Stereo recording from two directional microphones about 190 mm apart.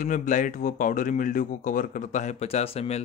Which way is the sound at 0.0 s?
40° left (ahead or behind).